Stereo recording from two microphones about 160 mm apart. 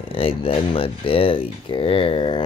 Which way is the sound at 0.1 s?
35° left (ahead or behind).